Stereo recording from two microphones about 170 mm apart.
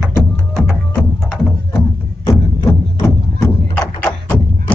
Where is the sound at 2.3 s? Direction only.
20° left (ahead or behind).